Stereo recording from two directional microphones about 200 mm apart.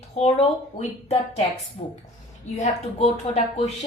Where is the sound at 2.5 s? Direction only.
35° left (ahead or behind).